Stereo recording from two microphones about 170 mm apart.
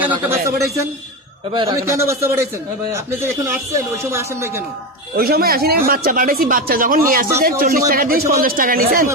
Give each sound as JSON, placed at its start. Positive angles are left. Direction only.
{"t": 0.0, "sound": "speech", "side_deg": -10}
{"t": 3.7, "sound": "speech", "side_deg": -15}
{"t": 5.1, "sound": "speech", "side_deg": -65}